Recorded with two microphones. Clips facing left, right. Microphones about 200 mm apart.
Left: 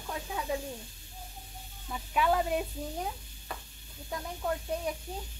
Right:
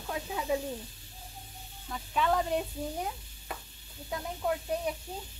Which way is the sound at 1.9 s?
10° left (ahead or behind).